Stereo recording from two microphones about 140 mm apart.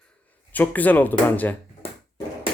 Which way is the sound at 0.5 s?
10° left (ahead or behind).